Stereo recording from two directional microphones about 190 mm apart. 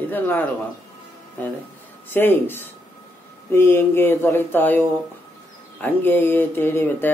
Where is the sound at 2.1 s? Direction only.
10° left (ahead or behind).